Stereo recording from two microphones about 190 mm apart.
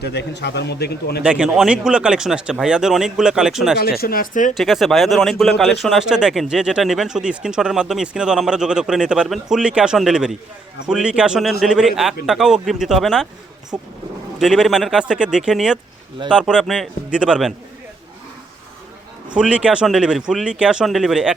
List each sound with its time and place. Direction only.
0.0 s a man's voice: 65° left (ahead or behind)
1.2 s speech: 5° right (ahead or behind)
4.0 s speech: 50° left (ahead or behind)
4.5 s speech: centre (ahead or behind)
19.3 s speech: 5° right (ahead or behind)